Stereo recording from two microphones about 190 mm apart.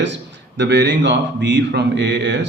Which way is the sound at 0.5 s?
65° right (ahead or behind).